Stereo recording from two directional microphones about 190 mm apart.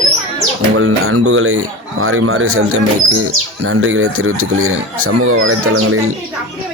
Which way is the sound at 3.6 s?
90° right.